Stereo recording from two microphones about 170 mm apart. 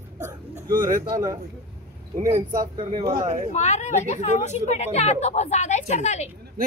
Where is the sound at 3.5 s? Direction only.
40° left (ahead or behind).